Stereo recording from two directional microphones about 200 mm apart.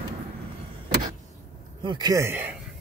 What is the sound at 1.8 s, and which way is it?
Speech, 20° right (ahead or behind).